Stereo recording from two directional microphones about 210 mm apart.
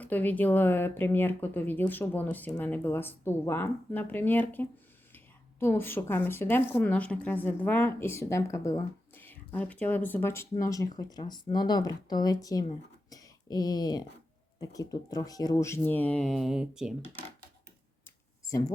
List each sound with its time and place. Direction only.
0.0 s a woman's voice: 10° left (ahead or behind)
13.1 s a sound: 15° left (ahead or behind)
14.6 s a woman's voice: 15° left (ahead or behind); by 16.9 s 5° right (ahead or behind)